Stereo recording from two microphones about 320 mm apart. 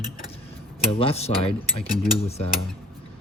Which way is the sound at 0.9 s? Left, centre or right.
Centre.